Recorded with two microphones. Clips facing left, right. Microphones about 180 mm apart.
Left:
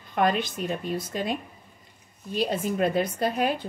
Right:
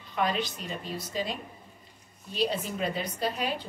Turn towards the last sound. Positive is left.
turn(degrees=50)  # may be behind; listen again after turning